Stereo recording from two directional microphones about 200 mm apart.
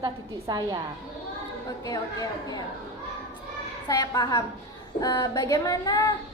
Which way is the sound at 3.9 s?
20° left (ahead or behind).